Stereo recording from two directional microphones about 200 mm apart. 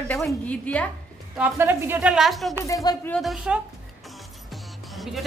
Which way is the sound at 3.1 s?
Centre (ahead or behind).